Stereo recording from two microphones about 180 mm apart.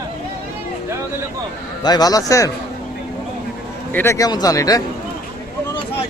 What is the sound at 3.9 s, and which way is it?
Speech, 15° left (ahead or behind).